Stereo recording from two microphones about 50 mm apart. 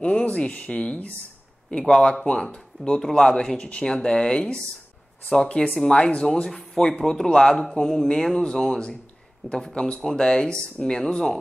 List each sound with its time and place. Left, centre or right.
0.0 s speech: left
1.7 s speech: centre
6.5 s speech: centre